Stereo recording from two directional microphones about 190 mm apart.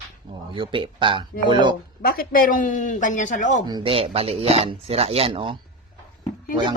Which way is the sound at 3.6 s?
25° right (ahead or behind).